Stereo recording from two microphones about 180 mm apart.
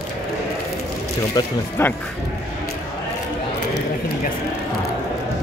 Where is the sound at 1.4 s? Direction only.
20° left (ahead or behind).